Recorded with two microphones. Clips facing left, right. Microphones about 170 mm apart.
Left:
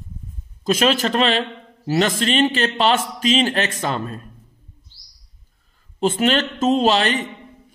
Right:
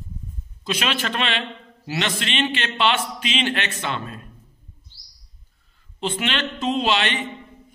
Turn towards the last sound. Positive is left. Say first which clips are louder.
# left 5 dB
turn(degrees=40)  # may be behind; listen again after turning